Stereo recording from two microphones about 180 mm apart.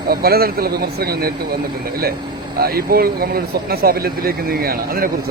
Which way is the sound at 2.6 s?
55° right (ahead or behind).